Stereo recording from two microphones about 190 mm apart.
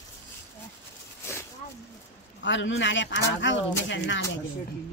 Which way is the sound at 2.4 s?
75° left (ahead or behind).